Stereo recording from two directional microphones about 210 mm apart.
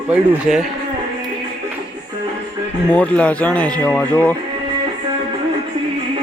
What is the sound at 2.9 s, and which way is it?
Speech, 5° left (ahead or behind).